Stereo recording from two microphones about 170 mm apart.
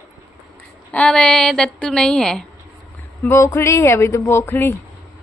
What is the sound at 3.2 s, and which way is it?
A woman's voice, 15° left (ahead or behind).